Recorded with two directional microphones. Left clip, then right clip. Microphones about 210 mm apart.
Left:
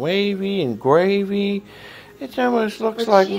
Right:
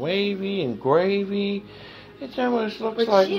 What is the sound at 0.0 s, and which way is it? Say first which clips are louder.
Speech: left 4 dB; 50° left (ahead or behind).